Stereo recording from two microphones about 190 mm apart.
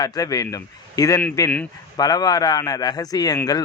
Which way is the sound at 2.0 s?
20° left (ahead or behind).